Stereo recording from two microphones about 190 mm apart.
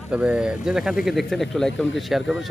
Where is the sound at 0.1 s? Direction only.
5° right (ahead or behind).